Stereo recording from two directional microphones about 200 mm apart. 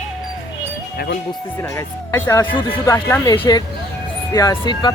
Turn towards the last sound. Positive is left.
turn(degrees=20)  # may be behind; listen again after turning